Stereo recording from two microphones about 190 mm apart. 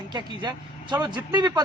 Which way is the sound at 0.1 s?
25° right (ahead or behind).